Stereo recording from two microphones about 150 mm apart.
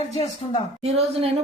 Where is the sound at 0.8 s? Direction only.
45° right (ahead or behind).